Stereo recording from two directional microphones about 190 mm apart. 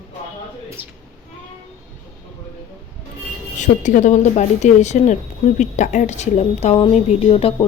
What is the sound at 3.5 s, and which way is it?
Speech, 40° left (ahead or behind).